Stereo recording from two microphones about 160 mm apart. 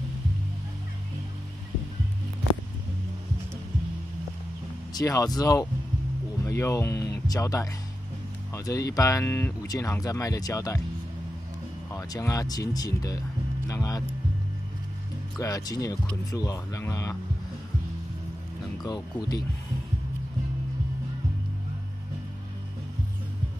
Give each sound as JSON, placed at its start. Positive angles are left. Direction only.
{"t": 4.9, "sound": "speech", "side_deg": 20}
{"t": 11.9, "sound": "speech", "side_deg": 20}
{"t": 15.3, "sound": "speech", "side_deg": 20}
{"t": 18.8, "sound": "speech", "side_deg": 25}